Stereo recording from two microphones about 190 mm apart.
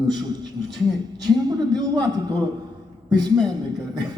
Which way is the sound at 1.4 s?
20° right (ahead or behind).